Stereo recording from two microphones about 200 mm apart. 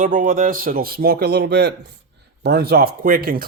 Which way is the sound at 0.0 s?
40° right (ahead or behind).